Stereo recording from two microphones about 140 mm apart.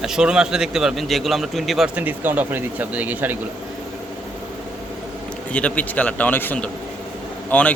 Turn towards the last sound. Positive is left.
turn(degrees=10)  # may be behind; listen again after turning